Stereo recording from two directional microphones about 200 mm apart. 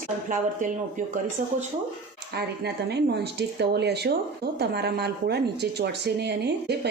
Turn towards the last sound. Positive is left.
turn(degrees=-55)  # may be behind; listen again after turning